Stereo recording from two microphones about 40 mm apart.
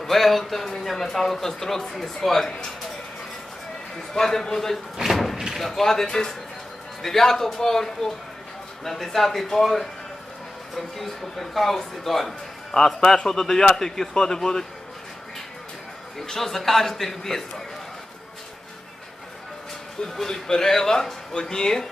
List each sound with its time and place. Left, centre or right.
0.0 s a man's voice: centre
4.1 s a man's voice: centre
4.9 s door: centre
5.5 s a man's voice: centre
16.1 s a man's voice: centre
20.1 s a man's voice: centre